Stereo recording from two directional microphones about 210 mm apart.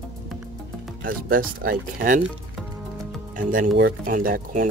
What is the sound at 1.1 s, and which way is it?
Speech, 40° right (ahead or behind).